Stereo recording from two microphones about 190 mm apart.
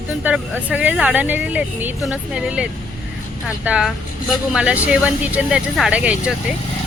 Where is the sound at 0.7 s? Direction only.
5° right (ahead or behind).